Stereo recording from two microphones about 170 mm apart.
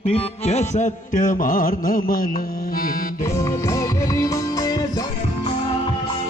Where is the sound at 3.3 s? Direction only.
20° left (ahead or behind).